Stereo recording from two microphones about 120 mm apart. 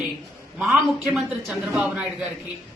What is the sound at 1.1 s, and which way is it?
A woman's voice, centre (ahead or behind).